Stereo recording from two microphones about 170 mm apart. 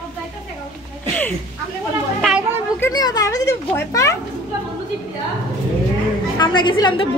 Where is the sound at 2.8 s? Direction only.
20° left (ahead or behind).